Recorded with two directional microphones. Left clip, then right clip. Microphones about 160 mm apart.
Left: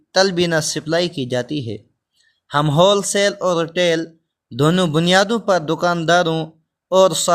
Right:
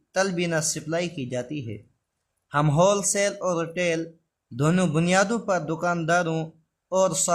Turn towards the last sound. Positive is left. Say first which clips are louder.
# left 9 dB
turn(degrees=30)  # may be behind; listen again after turning